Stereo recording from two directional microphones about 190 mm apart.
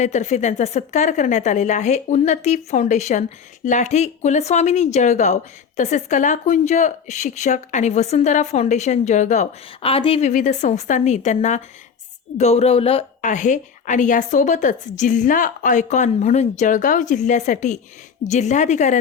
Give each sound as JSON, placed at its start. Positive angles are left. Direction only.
{"t": 0.0, "sound": "a woman's voice", "side_deg": 35}